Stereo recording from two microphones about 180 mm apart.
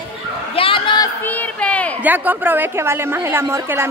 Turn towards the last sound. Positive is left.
turn(degrees=-15)  # may be behind; listen again after turning